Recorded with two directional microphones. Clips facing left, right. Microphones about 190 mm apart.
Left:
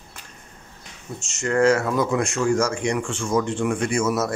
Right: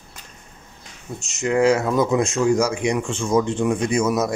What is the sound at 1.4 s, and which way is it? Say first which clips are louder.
Speech: right 1 dB; 15° right (ahead or behind).